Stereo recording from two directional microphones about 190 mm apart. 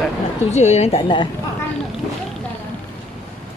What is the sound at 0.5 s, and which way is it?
Speech, 35° left (ahead or behind).